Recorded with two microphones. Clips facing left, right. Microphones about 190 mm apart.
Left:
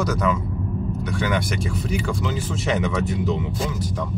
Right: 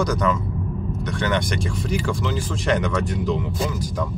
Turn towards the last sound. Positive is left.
turn(degrees=5)  # may be behind; listen again after turning